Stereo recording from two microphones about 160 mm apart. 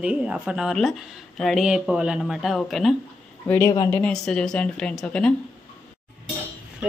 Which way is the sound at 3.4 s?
10° left (ahead or behind).